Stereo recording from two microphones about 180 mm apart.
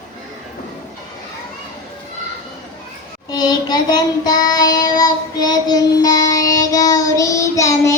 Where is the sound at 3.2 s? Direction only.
25° left (ahead or behind).